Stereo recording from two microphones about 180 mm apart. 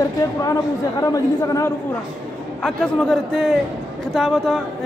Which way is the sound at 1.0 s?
20° left (ahead or behind).